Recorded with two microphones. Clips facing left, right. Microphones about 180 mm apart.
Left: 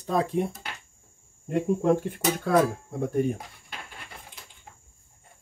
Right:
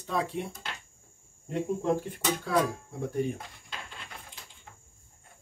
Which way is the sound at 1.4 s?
55° left (ahead or behind).